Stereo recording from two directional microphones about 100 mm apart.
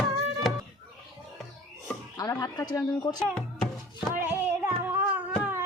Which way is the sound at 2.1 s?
40° left (ahead or behind).